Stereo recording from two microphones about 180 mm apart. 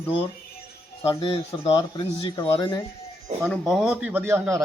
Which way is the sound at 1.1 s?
30° left (ahead or behind).